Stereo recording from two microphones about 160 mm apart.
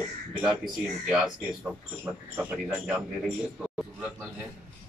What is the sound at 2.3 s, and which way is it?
Speech, 10° right (ahead or behind).